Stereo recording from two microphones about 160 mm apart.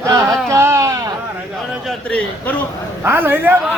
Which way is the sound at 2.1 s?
5° left (ahead or behind).